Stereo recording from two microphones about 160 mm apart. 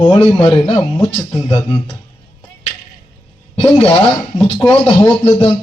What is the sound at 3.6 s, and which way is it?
A man's voice, 30° left (ahead or behind).